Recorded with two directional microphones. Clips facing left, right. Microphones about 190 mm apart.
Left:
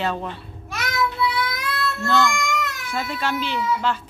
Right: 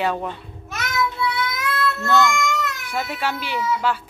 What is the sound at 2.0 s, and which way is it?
Speech, 20° right (ahead or behind).